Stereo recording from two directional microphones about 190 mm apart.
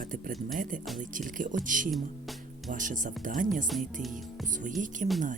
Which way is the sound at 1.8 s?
Centre (ahead or behind).